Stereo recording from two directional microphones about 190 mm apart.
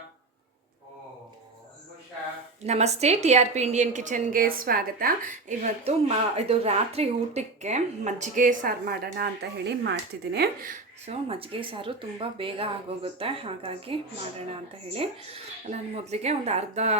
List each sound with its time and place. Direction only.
2.6 s a woman's voice: 35° right (ahead or behind); by 10.8 s 50° right (ahead or behind)
11.0 s a woman's voice: 30° right (ahead or behind)